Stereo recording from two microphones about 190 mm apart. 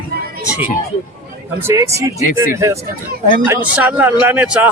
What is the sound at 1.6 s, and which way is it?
A man's voice, 15° right (ahead or behind).